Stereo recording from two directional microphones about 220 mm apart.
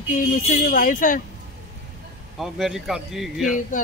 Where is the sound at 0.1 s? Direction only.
35° left (ahead or behind).